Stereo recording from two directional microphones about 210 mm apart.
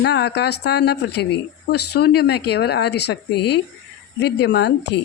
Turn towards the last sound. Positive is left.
turn(degrees=55)  # may be behind; listen again after turning